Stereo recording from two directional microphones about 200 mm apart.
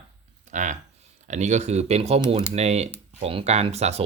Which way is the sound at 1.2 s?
35° right (ahead or behind).